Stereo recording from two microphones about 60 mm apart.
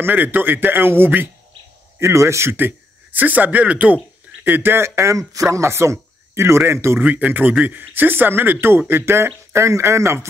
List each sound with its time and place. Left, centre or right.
0.0 s speech: right
2.0 s speech: right
2.5 s speech: right
4.5 s speech: right
7.0 s speech: right